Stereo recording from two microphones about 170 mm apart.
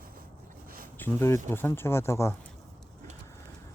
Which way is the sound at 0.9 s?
15° left (ahead or behind).